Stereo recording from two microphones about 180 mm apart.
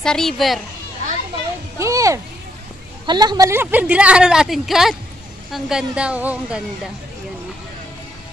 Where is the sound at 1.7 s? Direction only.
15° right (ahead or behind).